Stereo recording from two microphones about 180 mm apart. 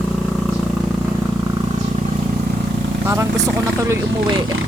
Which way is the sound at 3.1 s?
20° right (ahead or behind).